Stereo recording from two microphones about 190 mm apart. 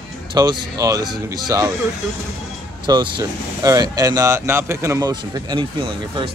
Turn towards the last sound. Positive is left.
turn(degrees=-25)  # may be behind; listen again after turning